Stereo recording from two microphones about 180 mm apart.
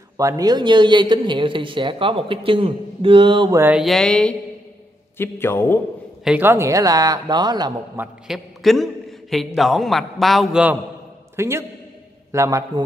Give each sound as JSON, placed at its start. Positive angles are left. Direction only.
{"t": 0.2, "sound": "speech", "side_deg": -20}
{"t": 3.5, "sound": "a man's voice", "side_deg": -10}
{"t": 3.8, "sound": "a man's voice", "side_deg": 0}
{"t": 6.2, "sound": "speech", "side_deg": -10}
{"t": 7.9, "sound": "a man's voice", "side_deg": -10}
{"t": 8.6, "sound": "a man's voice", "side_deg": 0}